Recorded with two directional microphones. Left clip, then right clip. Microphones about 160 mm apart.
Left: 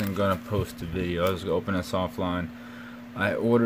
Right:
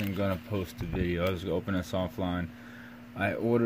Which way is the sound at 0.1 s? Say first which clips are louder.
Left 8 dB; 10° left (ahead or behind).